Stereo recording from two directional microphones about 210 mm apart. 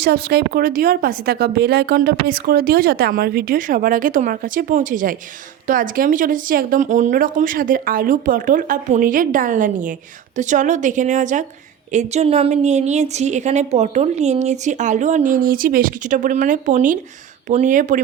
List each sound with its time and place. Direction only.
0.0 s a woman's voice: 50° right (ahead or behind)